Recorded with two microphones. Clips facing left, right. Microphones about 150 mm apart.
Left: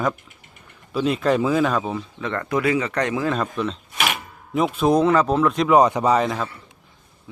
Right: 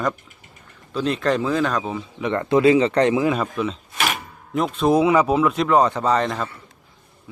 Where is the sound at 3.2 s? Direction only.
5° right (ahead or behind).